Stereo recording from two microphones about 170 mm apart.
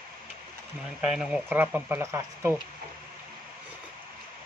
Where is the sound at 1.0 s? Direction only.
5° right (ahead or behind).